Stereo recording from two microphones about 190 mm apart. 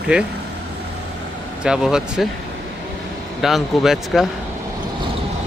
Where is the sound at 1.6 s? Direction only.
5° right (ahead or behind).